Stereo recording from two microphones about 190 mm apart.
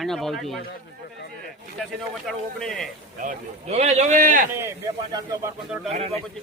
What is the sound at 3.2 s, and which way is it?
Speech, 40° right (ahead or behind).